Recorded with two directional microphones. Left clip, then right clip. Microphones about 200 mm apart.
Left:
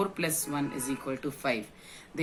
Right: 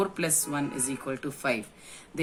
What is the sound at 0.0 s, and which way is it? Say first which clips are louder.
Speech: right 2 dB; 45° right (ahead or behind).